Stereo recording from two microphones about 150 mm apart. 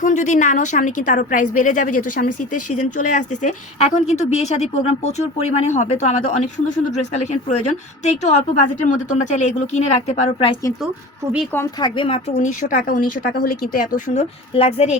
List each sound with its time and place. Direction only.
0.0 s a woman's voice: 55° left (ahead or behind)
11.8 s a woman's voice: 35° left (ahead or behind)
12.3 s speech: 55° left (ahead or behind)
14.5 s a woman's voice: 40° left (ahead or behind)